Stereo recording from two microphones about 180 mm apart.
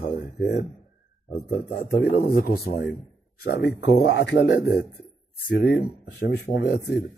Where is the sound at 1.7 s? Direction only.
65° left (ahead or behind).